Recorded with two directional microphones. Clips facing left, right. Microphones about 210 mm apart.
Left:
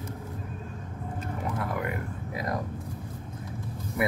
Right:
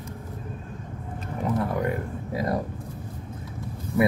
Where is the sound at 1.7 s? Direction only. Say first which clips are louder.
Right 5 dB; 35° right (ahead or behind).